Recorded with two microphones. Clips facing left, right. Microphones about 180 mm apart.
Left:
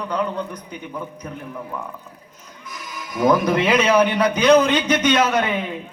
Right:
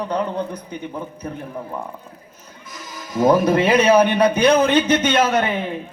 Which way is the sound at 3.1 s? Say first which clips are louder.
Right 2 dB; 30° right (ahead or behind).